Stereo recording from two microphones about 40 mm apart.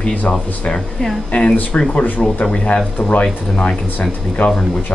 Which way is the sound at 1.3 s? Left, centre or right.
Left.